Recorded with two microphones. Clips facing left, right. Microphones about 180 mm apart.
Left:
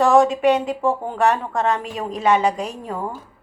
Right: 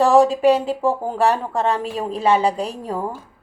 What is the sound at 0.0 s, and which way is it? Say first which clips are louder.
A woman's voice: right 1 dB; 35° right (ahead or behind).